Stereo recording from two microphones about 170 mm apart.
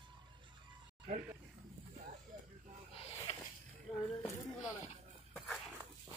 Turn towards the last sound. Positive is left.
turn(degrees=5)  # may be behind; listen again after turning